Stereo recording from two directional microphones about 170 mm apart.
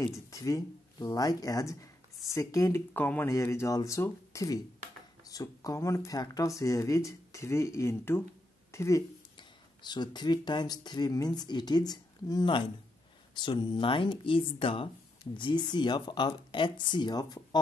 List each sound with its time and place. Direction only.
0.0 s speech: 20° left (ahead or behind)